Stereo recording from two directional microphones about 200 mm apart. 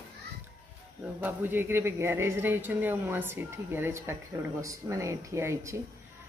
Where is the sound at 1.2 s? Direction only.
10° right (ahead or behind).